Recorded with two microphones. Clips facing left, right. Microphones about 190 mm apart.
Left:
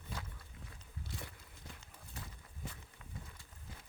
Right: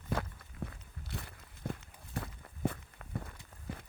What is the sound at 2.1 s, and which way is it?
Walk, 60° right (ahead or behind).